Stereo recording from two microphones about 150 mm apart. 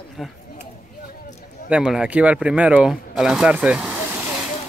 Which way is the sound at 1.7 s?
5° right (ahead or behind).